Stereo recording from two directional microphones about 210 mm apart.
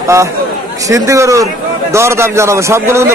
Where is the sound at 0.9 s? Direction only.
15° right (ahead or behind).